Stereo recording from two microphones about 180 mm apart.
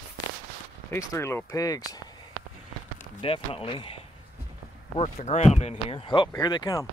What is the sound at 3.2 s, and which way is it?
Speech, 30° left (ahead or behind).